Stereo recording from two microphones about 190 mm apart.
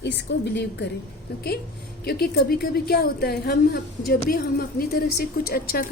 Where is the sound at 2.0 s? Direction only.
55° left (ahead or behind).